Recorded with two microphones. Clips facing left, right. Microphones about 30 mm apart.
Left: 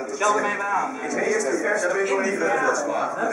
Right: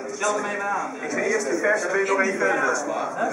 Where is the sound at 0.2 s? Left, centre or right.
Centre.